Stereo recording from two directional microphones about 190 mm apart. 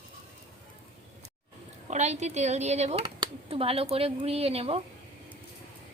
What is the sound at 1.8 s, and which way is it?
Speech, 35° right (ahead or behind).